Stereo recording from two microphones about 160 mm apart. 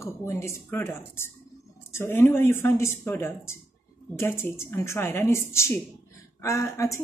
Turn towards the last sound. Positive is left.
turn(degrees=20)  # may be behind; listen again after turning